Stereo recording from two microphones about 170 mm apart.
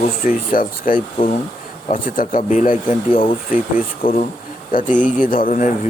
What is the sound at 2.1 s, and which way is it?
Speech, 50° left (ahead or behind).